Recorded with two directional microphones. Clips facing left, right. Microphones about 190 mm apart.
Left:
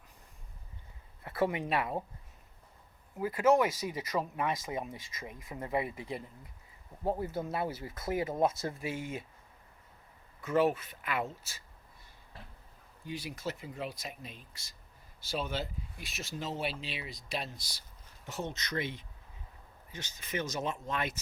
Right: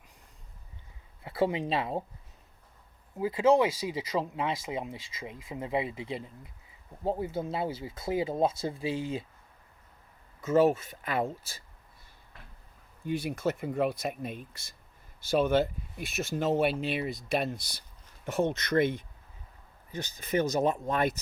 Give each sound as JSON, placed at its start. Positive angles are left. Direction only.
{"t": 1.2, "sound": "speech", "side_deg": -25}
{"t": 3.2, "sound": "speech", "side_deg": -15}
{"t": 10.5, "sound": "speech", "side_deg": -45}
{"t": 13.1, "sound": "speech", "side_deg": -55}
{"t": 19.9, "sound": "speech", "side_deg": -35}